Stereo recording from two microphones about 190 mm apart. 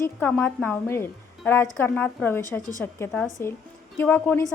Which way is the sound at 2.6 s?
20° right (ahead or behind).